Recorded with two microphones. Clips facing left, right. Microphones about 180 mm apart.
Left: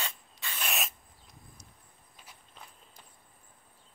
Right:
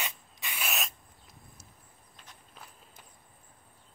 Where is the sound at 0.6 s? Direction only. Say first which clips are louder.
Even; centre (ahead or behind).